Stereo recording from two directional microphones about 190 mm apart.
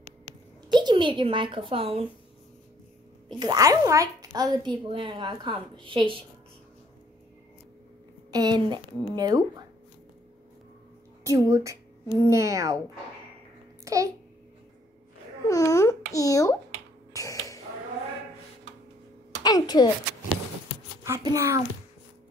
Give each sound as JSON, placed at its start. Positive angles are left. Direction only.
{"t": 0.7, "sound": "a child's voice", "side_deg": -25}
{"t": 3.3, "sound": "speech", "side_deg": -20}
{"t": 8.3, "sound": "speech", "side_deg": -20}
{"t": 11.2, "sound": "speech", "side_deg": -15}
{"t": 13.8, "sound": "a child's voice", "side_deg": -15}
{"t": 15.4, "sound": "a child's voice", "side_deg": 15}
{"t": 17.1, "sound": "creak", "side_deg": 15}
{"t": 19.4, "sound": "a child's voice", "side_deg": 20}
{"t": 21.0, "sound": "a child's voice", "side_deg": -15}